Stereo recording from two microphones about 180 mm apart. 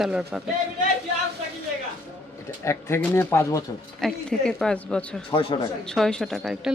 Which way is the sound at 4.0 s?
5° left (ahead or behind).